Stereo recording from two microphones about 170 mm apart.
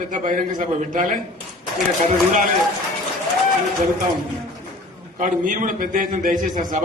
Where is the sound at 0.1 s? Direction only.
50° right (ahead or behind).